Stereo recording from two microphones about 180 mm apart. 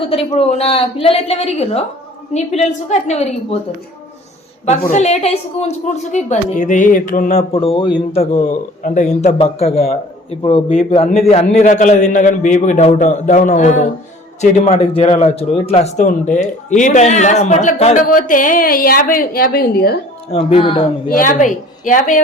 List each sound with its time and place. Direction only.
0.0 s speech: 30° left (ahead or behind)
4.8 s a woman's voice: 55° left (ahead or behind)
5.0 s a woman's voice: 35° left (ahead or behind); by 20.0 s 60° left (ahead or behind)
20.3 s speech: 30° left (ahead or behind)
21.1 s a woman's voice: 50° left (ahead or behind)